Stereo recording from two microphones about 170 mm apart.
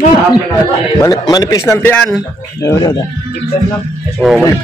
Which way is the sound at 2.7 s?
20° left (ahead or behind).